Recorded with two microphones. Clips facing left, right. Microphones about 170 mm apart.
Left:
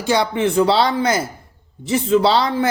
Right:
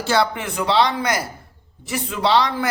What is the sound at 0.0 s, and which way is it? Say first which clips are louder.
A man's voice: left 3 dB; 15° left (ahead or behind).